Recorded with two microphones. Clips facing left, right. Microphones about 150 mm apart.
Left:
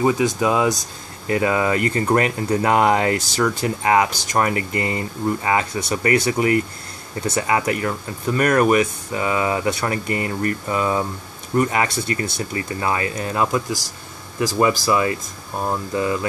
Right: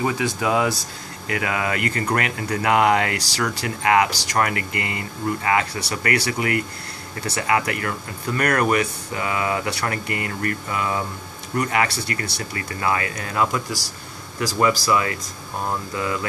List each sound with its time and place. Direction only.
0.0 s speech: 25° left (ahead or behind)